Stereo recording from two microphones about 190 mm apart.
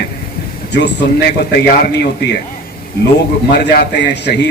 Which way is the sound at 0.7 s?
65° left (ahead or behind).